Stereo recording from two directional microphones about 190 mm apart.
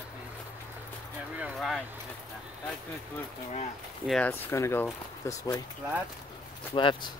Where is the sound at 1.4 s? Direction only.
Centre (ahead or behind).